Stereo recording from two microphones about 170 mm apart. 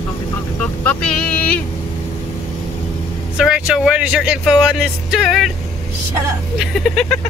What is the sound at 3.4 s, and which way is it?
Speech, 5° right (ahead or behind).